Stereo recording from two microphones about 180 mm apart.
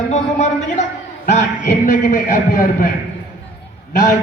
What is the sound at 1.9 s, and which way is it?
A man's voice, 45° left (ahead or behind).